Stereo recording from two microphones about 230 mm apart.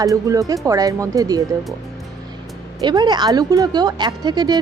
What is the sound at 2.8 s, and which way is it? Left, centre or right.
Speech, centre.